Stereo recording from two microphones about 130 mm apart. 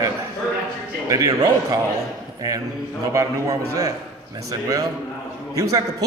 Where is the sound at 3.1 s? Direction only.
25° right (ahead or behind).